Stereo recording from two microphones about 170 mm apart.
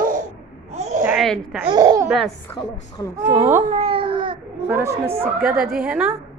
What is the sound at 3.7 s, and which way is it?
Baby cry, 35° right (ahead or behind).